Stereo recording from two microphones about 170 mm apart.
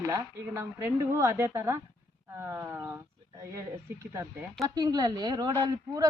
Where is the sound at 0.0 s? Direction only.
20° right (ahead or behind).